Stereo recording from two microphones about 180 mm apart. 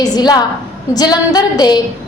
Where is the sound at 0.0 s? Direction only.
20° left (ahead or behind).